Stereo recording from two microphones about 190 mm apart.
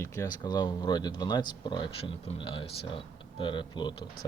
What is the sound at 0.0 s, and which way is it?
Speech, 15° left (ahead or behind).